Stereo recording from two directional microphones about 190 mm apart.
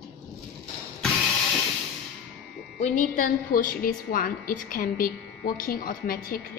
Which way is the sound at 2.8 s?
40° left (ahead or behind).